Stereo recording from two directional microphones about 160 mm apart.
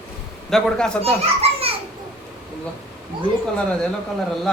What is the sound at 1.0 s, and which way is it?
Children playing, 40° right (ahead or behind).